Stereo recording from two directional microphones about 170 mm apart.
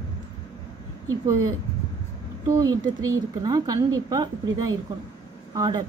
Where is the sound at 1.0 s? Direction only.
20° right (ahead or behind).